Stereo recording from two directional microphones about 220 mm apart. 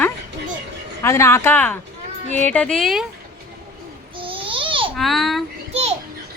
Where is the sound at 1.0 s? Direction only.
10° left (ahead or behind).